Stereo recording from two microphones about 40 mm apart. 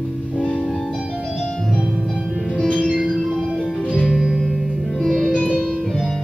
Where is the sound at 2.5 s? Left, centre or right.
Centre.